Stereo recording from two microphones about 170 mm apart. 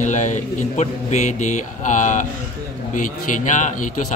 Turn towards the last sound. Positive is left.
turn(degrees=45)  # may be behind; listen again after turning